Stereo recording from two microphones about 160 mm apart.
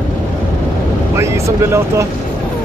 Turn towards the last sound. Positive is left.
turn(degrees=-20)  # may be behind; listen again after turning